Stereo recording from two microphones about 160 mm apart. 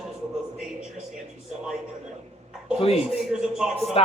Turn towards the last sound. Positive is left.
turn(degrees=-5)  # may be behind; listen again after turning